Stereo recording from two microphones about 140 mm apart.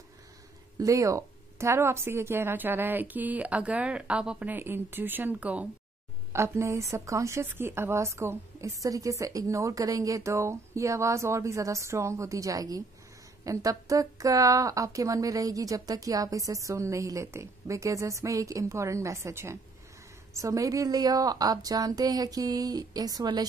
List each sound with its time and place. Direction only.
0.7 s a woman's voice: 25° right (ahead or behind)